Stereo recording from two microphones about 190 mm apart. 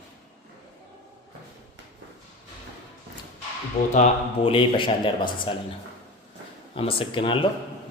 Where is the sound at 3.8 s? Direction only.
35° left (ahead or behind).